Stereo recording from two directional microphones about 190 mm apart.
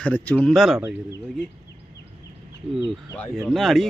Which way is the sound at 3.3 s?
Centre (ahead or behind).